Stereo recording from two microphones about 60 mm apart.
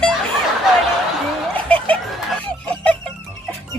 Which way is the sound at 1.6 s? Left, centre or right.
Left.